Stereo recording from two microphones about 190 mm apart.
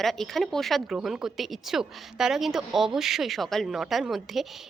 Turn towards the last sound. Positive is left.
turn(degrees=0)  # may be behind; listen again after turning